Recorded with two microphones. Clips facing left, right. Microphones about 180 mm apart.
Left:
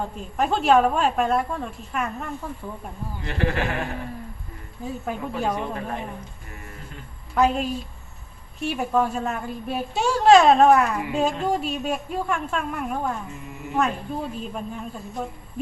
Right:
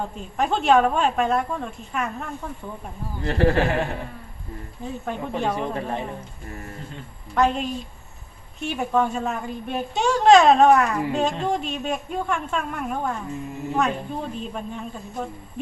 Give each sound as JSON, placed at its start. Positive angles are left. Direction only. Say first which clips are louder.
{"t": 0.0, "sound": "a woman's voice", "louder": "even", "side_deg": 0}
{"t": 3.2, "sound": "a woman's voice", "louder": "right 6 dB", "side_deg": -35}
{"t": 4.8, "sound": "a woman's voice", "louder": "left 1 dB", "side_deg": 5}
{"t": 5.5, "sound": "a woman's voice", "louder": "right 2 dB", "side_deg": -30}
{"t": 7.3, "sound": "a woman's voice", "louder": "even", "side_deg": 5}